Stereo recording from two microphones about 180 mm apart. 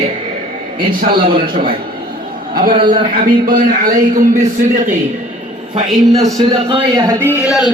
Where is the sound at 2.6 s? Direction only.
55° right (ahead or behind).